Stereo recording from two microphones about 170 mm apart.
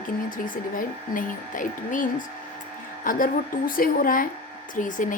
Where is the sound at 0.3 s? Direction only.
55° left (ahead or behind).